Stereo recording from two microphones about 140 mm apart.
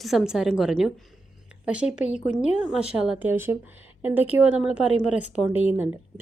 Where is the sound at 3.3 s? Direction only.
15° right (ahead or behind).